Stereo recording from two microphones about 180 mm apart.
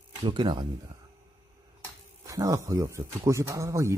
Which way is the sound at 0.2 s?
25° right (ahead or behind).